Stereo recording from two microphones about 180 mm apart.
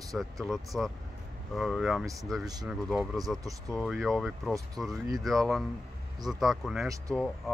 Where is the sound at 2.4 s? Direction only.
20° right (ahead or behind).